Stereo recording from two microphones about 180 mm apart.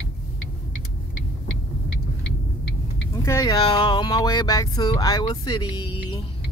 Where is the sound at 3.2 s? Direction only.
15° left (ahead or behind).